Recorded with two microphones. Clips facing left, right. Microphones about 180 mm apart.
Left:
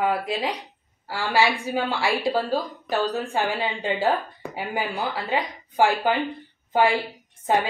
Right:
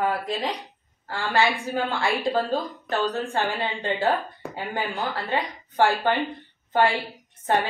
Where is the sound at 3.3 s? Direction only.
15° left (ahead or behind).